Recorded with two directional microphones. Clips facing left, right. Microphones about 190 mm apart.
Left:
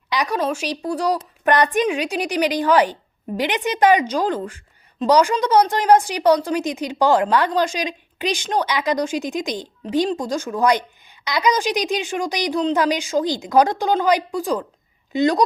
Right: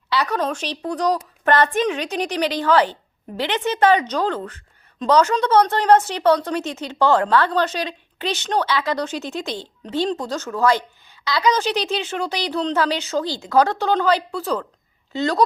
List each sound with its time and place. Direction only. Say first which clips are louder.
0.1 s a woman's voice: even; 15° left (ahead or behind)